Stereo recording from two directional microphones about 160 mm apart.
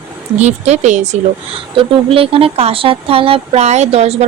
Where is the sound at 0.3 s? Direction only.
45° right (ahead or behind).